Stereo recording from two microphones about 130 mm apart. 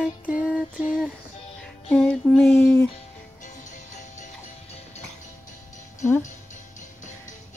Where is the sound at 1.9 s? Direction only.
10° left (ahead or behind).